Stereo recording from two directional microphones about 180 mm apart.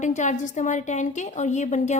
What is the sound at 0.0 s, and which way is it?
A woman's voice, 45° left (ahead or behind).